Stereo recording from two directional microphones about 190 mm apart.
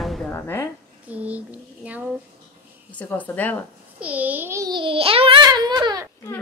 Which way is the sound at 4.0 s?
10° right (ahead or behind).